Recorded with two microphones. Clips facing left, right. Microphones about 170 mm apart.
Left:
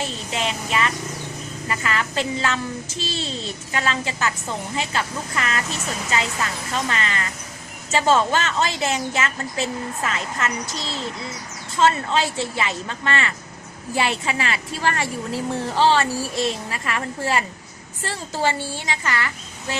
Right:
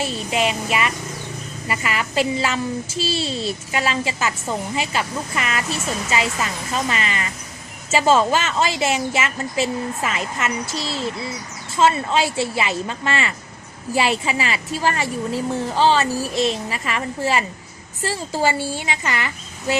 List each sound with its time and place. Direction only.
0.0 s a woman's voice: 10° right (ahead or behind)